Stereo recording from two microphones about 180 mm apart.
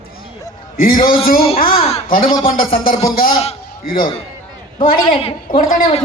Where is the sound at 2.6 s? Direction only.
50° left (ahead or behind).